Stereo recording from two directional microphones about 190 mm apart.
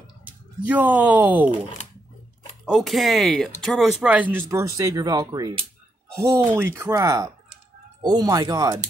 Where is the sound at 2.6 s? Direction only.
Centre (ahead or behind).